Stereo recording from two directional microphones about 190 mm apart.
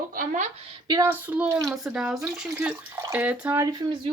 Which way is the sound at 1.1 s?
10° right (ahead or behind).